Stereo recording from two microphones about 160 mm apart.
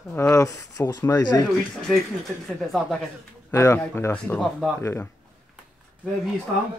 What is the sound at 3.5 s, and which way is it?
A man's voice, 15° left (ahead or behind).